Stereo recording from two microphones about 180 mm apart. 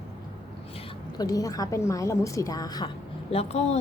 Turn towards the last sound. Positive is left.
turn(degrees=35)  # may be behind; listen again after turning